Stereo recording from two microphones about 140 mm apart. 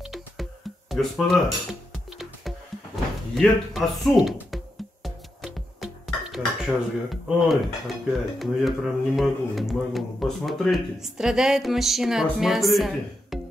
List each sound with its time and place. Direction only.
0.0 s music: centre (ahead or behind)
8.4 s speech: centre (ahead or behind)